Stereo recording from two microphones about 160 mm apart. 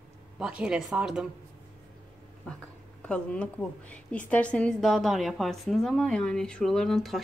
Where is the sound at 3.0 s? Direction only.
5° left (ahead or behind).